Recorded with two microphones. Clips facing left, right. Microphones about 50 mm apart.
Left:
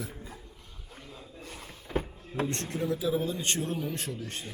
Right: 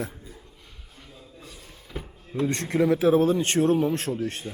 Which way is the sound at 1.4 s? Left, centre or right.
Left.